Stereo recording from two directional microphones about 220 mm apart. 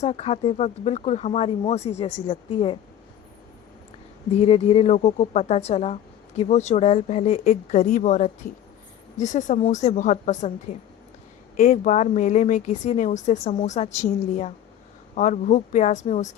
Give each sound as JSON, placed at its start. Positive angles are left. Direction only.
{"t": 0.0, "sound": "a woman's voice", "side_deg": 30}
{"t": 4.3, "sound": "a woman's voice", "side_deg": 25}